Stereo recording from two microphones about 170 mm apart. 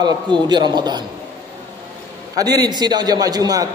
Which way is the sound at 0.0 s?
25° right (ahead or behind).